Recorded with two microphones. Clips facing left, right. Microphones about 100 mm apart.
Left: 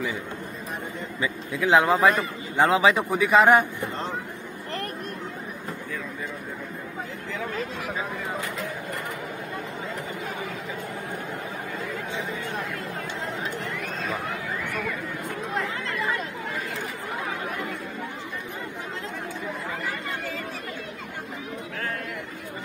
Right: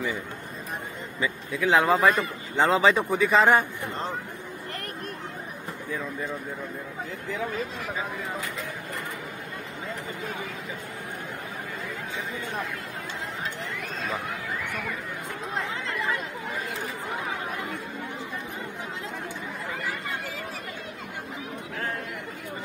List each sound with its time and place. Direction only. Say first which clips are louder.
1.2 s a man's voice: even; 15° left (ahead or behind)